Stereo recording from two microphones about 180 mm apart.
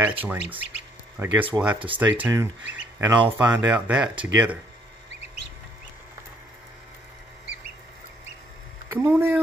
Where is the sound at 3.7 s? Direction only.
5° right (ahead or behind).